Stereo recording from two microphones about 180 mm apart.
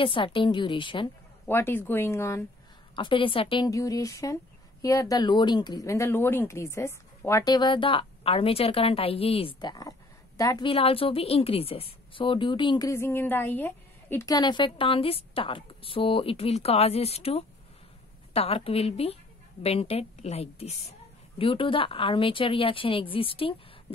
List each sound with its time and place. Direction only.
0.0 s speech: 30° left (ahead or behind)
1.5 s speech: 10° left (ahead or behind)
3.0 s a woman's voice: 30° left (ahead or behind)